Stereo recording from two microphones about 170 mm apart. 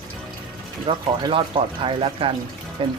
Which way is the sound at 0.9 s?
30° right (ahead or behind).